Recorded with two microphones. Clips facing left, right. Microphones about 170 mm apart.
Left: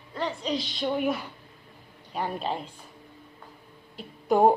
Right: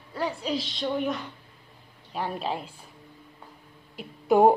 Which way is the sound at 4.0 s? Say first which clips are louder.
Right 2 dB; 5° right (ahead or behind).